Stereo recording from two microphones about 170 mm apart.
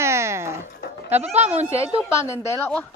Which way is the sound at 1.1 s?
10° right (ahead or behind).